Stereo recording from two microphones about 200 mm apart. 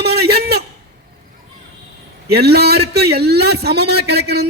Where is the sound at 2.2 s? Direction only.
55° right (ahead or behind).